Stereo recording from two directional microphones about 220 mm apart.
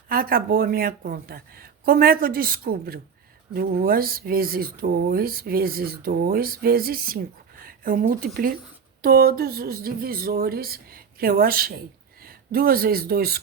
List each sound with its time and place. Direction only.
0.1 s speech: 40° right (ahead or behind)